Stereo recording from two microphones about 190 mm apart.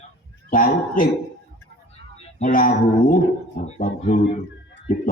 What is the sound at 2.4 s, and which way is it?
Speech, 45° left (ahead or behind).